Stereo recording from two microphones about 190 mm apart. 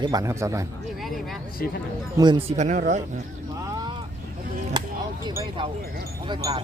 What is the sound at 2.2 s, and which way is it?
Speech, 25° right (ahead or behind).